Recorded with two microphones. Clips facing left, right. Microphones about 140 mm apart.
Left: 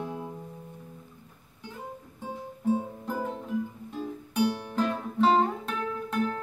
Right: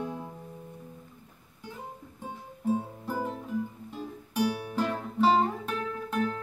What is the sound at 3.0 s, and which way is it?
Music, 5° right (ahead or behind).